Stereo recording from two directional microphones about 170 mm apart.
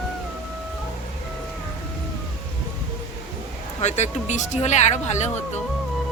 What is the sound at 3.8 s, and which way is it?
Speech, 45° left (ahead or behind).